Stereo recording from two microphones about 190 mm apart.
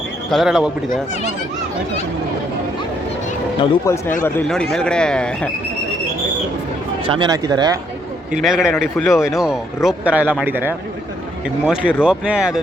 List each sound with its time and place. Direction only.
0.3 s speech: centre (ahead or behind)
3.6 s speech: 15° left (ahead or behind)
7.1 s speech: 20° right (ahead or behind)
8.3 s speech: centre (ahead or behind)